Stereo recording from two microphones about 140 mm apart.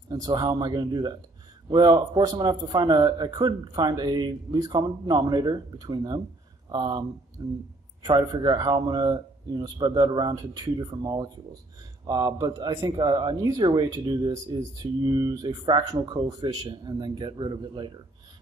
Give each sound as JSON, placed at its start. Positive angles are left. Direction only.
{"t": 0.1, "sound": "speech", "side_deg": -30}